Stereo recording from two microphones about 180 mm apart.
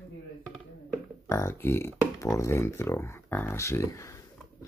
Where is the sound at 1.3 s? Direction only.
15° left (ahead or behind).